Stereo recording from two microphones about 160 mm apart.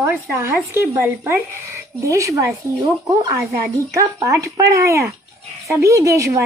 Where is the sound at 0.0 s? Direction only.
15° right (ahead or behind).